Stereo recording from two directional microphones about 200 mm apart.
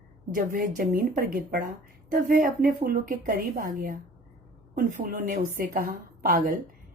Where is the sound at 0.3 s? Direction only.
45° right (ahead or behind).